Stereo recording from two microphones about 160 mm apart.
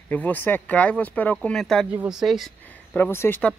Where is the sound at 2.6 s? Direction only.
10° left (ahead or behind).